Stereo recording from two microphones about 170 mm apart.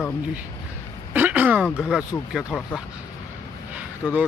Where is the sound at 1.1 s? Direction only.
10° right (ahead or behind).